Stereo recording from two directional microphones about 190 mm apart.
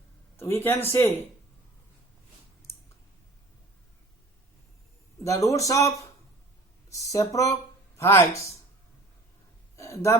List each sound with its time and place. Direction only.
0.3 s speech: 15° left (ahead or behind)
5.2 s speech: 15° left (ahead or behind)
9.7 s a sound: 15° left (ahead or behind)